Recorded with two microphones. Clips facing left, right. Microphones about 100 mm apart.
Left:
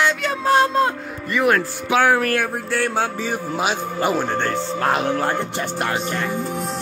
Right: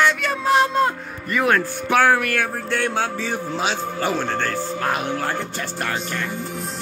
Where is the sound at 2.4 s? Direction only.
5° left (ahead or behind); by 4.7 s 20° left (ahead or behind).